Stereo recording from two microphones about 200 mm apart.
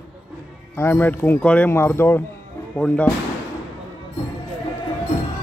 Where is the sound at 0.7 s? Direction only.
10° left (ahead or behind).